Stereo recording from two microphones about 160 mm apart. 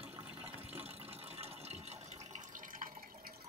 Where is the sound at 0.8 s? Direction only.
40° right (ahead or behind).